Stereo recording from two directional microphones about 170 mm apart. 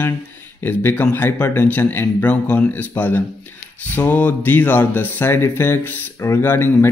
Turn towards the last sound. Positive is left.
turn(degrees=15)  # may be behind; listen again after turning